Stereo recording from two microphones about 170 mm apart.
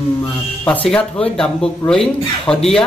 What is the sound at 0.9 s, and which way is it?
A man's voice, 5° left (ahead or behind).